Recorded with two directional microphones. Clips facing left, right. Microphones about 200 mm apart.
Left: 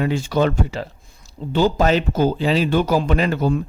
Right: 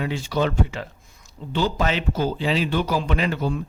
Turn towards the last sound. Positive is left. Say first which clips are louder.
# left 5 dB
turn(degrees=45)  # may be behind; listen again after turning